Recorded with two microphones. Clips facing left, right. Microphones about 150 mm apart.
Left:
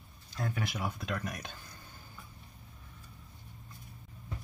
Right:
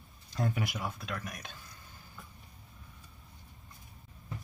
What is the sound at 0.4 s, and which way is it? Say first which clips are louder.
Speech: right 3 dB; 20° right (ahead or behind).